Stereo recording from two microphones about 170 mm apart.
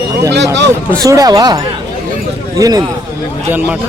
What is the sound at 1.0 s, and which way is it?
Speech, 20° right (ahead or behind).